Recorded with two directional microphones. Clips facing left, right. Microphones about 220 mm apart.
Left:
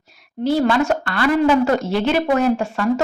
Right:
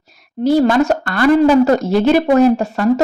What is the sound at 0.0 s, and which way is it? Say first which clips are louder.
A woman's voice: right 5 dB; 40° right (ahead or behind).